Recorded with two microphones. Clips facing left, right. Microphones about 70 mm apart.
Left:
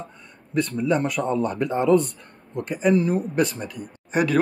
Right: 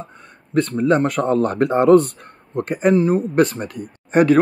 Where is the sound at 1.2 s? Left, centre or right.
Right.